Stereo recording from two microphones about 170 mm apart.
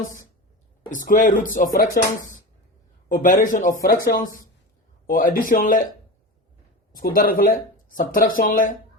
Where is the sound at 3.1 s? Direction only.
50° left (ahead or behind).